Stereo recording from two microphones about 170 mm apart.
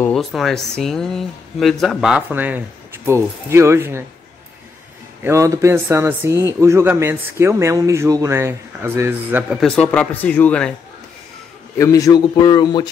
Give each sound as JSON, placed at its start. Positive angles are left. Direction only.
{"t": 0.0, "sound": "speech", "side_deg": 0}
{"t": 5.2, "sound": "speech", "side_deg": -15}
{"t": 9.5, "sound": "speech", "side_deg": 5}
{"t": 11.8, "sound": "a man's voice", "side_deg": 20}